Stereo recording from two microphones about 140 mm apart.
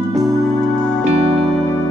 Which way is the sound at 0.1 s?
Centre (ahead or behind).